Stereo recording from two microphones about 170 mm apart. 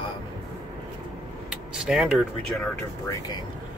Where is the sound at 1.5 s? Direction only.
5° right (ahead or behind).